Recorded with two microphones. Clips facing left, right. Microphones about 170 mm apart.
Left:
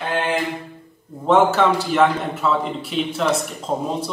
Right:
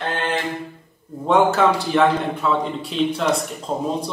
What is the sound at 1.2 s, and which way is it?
Speech, centre (ahead or behind).